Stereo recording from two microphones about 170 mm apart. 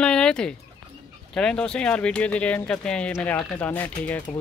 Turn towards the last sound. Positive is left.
turn(degrees=10)  # may be behind; listen again after turning